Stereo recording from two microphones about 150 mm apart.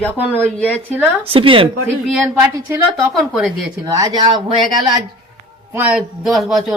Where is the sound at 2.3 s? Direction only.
15° right (ahead or behind).